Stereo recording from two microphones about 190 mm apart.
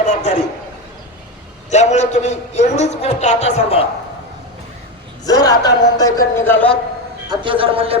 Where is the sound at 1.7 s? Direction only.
35° left (ahead or behind).